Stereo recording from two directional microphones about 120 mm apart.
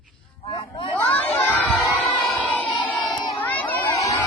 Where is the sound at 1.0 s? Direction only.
15° left (ahead or behind).